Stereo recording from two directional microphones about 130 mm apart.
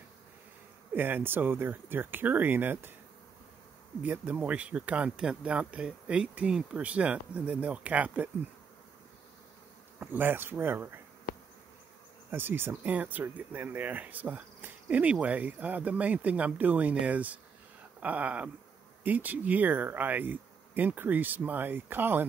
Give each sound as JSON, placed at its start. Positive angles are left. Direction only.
{"t": 0.9, "sound": "speech", "side_deg": -15}
{"t": 4.0, "sound": "speech", "side_deg": -15}
{"t": 9.9, "sound": "speech", "side_deg": -15}
{"t": 12.3, "sound": "speech", "side_deg": -15}